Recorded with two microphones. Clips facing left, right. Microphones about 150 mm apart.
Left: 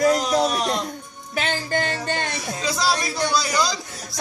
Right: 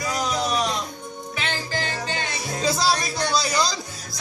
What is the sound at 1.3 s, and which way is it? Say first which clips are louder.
Music: left 5 dB; 50° left (ahead or behind).